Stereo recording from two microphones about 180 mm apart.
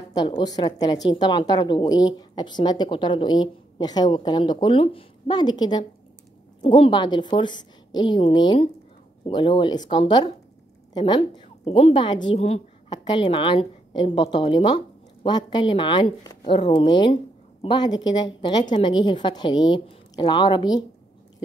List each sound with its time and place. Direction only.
0.1 s a woman's voice: 20° left (ahead or behind)